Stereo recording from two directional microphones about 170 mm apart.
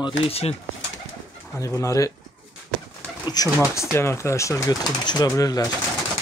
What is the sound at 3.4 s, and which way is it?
Speech, 25° left (ahead or behind).